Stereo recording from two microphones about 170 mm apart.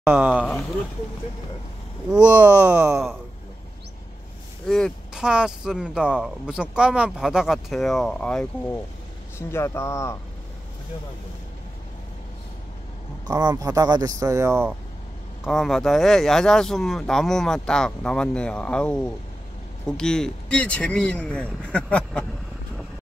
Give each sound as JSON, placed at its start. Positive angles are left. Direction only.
{"t": 0.0, "sound": "speech", "side_deg": -10}
{"t": 0.4, "sound": "speech", "side_deg": 0}
{"t": 2.2, "sound": "speech", "side_deg": -10}
{"t": 4.6, "sound": "speech", "side_deg": 5}
{"t": 9.4, "sound": "speech", "side_deg": 15}
{"t": 13.3, "sound": "speech", "side_deg": -25}
{"t": 15.4, "sound": "speech", "side_deg": 0}